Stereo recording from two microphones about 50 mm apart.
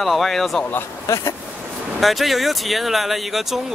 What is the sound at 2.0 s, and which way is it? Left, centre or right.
Speech, centre.